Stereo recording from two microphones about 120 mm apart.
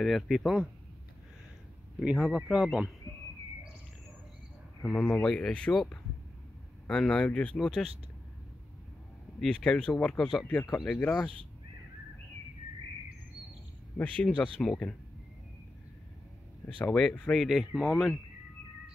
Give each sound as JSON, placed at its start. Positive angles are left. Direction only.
{"t": 0.0, "sound": "speech", "side_deg": 0}
{"t": 2.0, "sound": "speech", "side_deg": -5}
{"t": 4.8, "sound": "speech", "side_deg": 10}
{"t": 9.4, "sound": "speech", "side_deg": 5}
{"t": 10.6, "sound": "speech", "side_deg": 30}
{"t": 10.9, "sound": "speech", "side_deg": 10}
{"t": 13.9, "sound": "speech", "side_deg": 10}
{"t": 16.6, "sound": "speech", "side_deg": 5}